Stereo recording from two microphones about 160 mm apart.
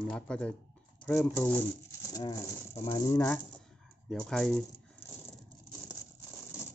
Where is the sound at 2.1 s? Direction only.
25° left (ahead or behind).